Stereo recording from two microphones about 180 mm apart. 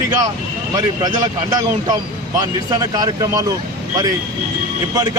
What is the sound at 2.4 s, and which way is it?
Speech, 20° right (ahead or behind).